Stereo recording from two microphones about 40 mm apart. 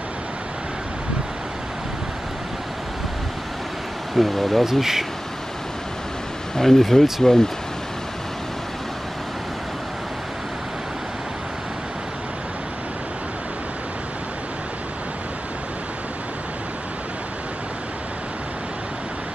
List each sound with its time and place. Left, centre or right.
4.2 s speech: centre
4.6 s speech: centre
6.5 s speech: centre